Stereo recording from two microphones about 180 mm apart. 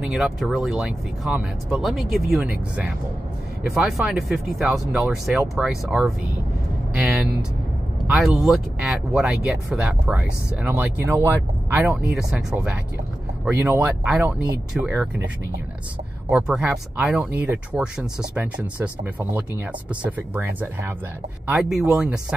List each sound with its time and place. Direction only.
0.0 s speech: centre (ahead or behind)
16.3 s speech: 5° right (ahead or behind)